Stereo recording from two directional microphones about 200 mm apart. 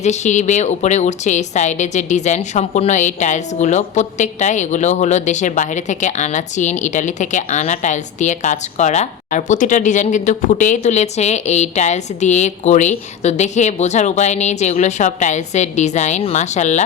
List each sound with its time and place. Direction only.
0.0 s a woman's voice: 35° left (ahead or behind)